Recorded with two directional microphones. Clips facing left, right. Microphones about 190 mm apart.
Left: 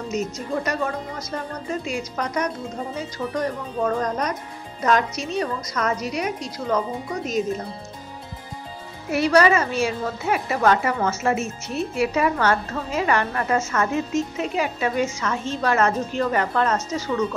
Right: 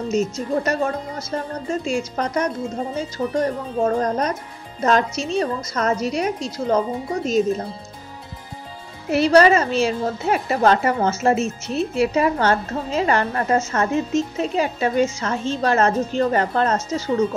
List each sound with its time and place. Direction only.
0.1 s a woman's voice: 25° right (ahead or behind)
9.1 s a woman's voice: 30° right (ahead or behind)